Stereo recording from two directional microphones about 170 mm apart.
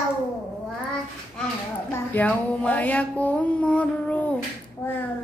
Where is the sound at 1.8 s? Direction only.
10° left (ahead or behind).